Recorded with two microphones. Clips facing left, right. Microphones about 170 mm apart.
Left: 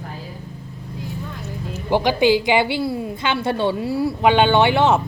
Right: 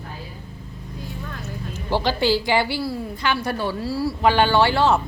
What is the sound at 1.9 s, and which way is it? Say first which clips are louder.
A woman's voice: left 4 dB; 15° left (ahead or behind).